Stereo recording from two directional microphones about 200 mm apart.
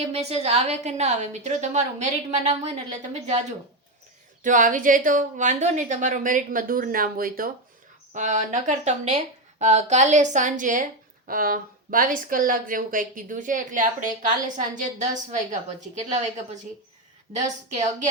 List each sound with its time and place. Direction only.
0.1 s a woman's voice: 30° right (ahead or behind)
4.4 s a woman's voice: 40° right (ahead or behind)